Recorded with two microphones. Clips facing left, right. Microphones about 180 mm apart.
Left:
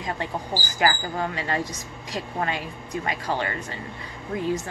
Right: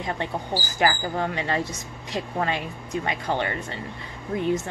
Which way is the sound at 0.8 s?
25° right (ahead or behind).